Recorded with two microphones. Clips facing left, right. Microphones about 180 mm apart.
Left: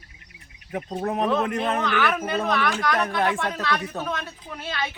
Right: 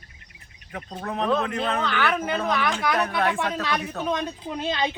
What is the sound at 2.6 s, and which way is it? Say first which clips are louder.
Speech: even; 10° right (ahead or behind).